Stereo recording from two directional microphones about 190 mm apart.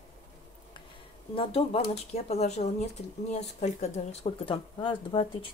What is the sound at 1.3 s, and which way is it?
Speech, 30° left (ahead or behind).